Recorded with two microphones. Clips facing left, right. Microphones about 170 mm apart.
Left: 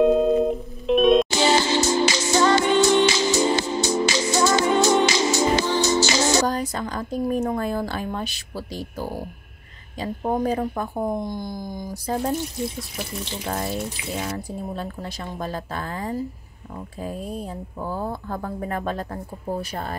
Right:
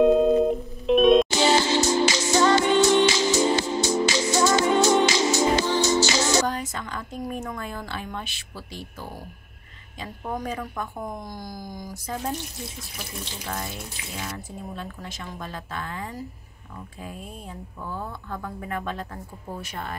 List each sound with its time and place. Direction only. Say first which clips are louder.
0.0 s music: even; centre (ahead or behind)
1.3 s music: left 1 dB; 70° left (ahead or behind)
6.4 s speech: left 4 dB; 35° left (ahead or behind)
13.5 s speech: left 7 dB; 35° left (ahead or behind)